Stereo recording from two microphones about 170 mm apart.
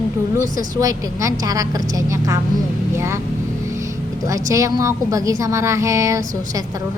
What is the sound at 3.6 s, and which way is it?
Vehicle, 15° right (ahead or behind).